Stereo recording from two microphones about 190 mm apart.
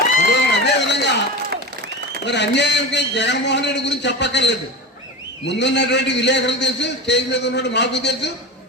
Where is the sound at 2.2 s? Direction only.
65° left (ahead or behind).